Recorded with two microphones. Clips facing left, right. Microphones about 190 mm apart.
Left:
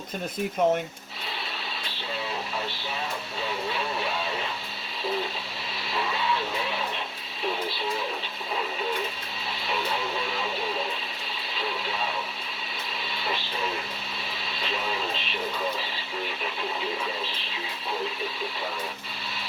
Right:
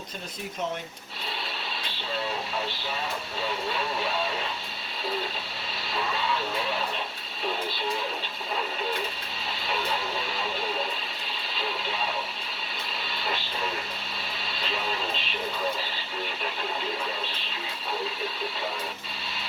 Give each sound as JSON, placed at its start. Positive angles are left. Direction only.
{"t": 0.6, "sound": "speech", "side_deg": 55}